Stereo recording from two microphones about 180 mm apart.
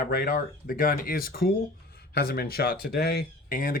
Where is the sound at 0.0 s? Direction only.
55° left (ahead or behind).